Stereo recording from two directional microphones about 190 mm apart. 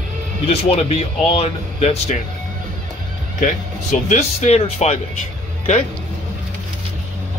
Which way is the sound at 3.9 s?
40° left (ahead or behind).